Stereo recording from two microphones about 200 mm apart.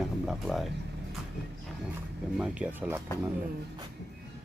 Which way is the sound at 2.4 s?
5° right (ahead or behind).